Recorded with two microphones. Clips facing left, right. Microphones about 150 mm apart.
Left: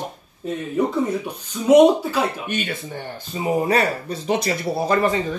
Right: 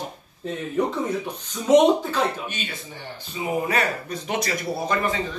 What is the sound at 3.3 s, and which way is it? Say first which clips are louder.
Speech: left 5 dB; 40° left (ahead or behind).